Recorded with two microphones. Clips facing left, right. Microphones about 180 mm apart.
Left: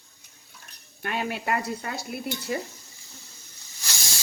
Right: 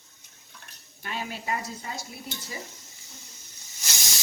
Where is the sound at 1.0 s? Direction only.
60° left (ahead or behind).